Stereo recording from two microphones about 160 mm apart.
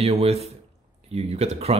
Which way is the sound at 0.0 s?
40° right (ahead or behind).